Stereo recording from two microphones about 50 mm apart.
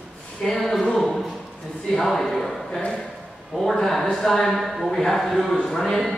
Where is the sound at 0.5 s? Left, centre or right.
Centre.